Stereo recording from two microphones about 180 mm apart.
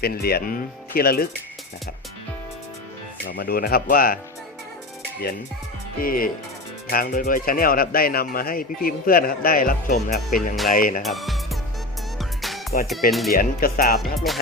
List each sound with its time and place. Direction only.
0.0 s speech: 60° left (ahead or behind)
3.3 s speech: 60° left (ahead or behind)
6.0 s speech: 50° left (ahead or behind)
11.0 s speech: centre (ahead or behind)
12.4 s music: centre (ahead or behind)
13.1 s speech: centre (ahead or behind)
13.3 s speech: 50° left (ahead or behind)
14.3 s speech: centre (ahead or behind)